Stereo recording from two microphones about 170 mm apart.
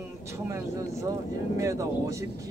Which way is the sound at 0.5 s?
20° right (ahead or behind).